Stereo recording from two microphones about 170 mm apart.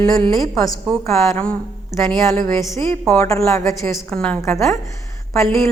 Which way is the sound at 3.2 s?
20° left (ahead or behind).